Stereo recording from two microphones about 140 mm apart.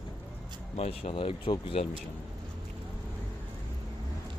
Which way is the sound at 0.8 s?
50° left (ahead or behind).